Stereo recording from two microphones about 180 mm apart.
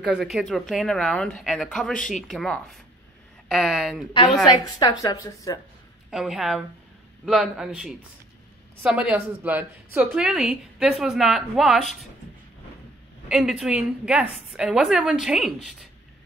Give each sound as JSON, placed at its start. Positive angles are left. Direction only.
{"t": 0.0, "sound": "a woman's voice", "side_deg": 0}
{"t": 4.7, "sound": "speech", "side_deg": 20}
{"t": 6.0, "sound": "a woman's voice", "side_deg": 0}
{"t": 13.3, "sound": "a woman's voice", "side_deg": -5}